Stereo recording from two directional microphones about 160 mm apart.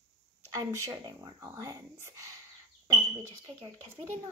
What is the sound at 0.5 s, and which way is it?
Speech, 20° right (ahead or behind).